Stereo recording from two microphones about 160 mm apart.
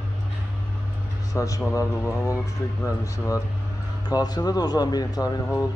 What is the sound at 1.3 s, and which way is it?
Speech, 20° left (ahead or behind).